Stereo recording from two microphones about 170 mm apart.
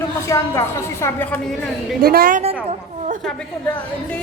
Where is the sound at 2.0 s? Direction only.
60° right (ahead or behind).